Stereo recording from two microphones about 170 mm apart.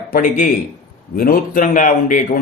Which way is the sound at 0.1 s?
50° left (ahead or behind).